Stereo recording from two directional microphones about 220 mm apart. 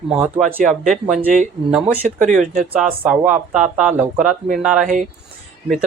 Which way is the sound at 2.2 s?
35° right (ahead or behind).